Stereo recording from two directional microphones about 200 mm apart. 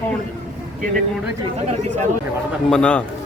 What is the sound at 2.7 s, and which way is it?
Speech, 5° left (ahead or behind).